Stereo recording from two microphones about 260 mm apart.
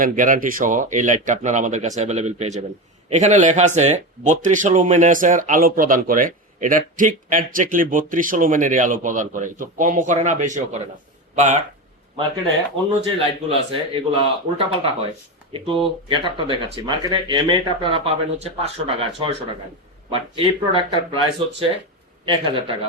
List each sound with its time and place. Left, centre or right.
0.0 s speech: right
13.0 s speech: right